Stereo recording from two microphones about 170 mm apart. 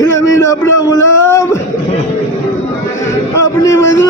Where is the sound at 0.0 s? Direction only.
20° left (ahead or behind).